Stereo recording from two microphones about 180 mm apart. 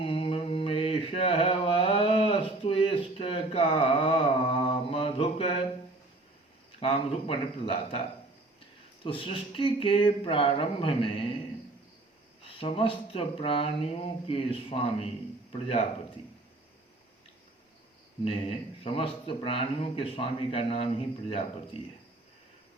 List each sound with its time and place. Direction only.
0.0 s mantra: 30° left (ahead or behind)
6.7 s a man's voice: 30° left (ahead or behind)
9.0 s speech: 30° left (ahead or behind)
12.5 s a man's voice: 30° left (ahead or behind)
18.3 s a man's voice: 30° left (ahead or behind)